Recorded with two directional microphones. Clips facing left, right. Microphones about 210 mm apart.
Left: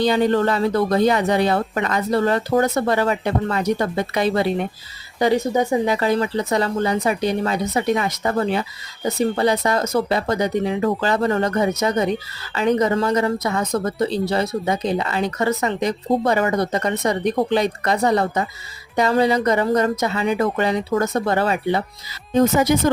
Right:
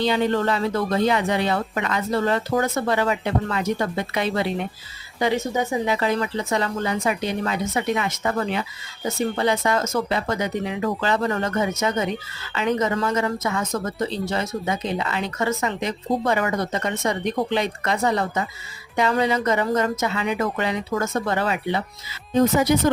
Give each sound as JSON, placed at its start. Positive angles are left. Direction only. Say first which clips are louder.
{"t": 0.0, "sound": "speech", "louder": "left 4 dB", "side_deg": 45}